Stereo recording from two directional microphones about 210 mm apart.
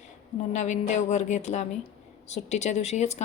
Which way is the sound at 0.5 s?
35° left (ahead or behind).